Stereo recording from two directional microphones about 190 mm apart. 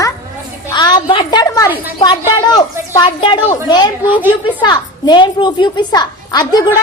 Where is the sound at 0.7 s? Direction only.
20° left (ahead or behind).